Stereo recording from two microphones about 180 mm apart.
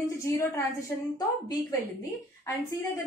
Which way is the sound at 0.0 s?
15° left (ahead or behind).